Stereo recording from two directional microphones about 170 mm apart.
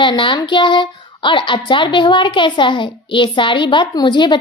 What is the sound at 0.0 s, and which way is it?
A woman's voice, 30° left (ahead or behind).